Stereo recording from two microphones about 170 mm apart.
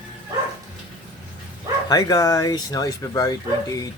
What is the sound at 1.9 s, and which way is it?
Speech, 20° left (ahead or behind).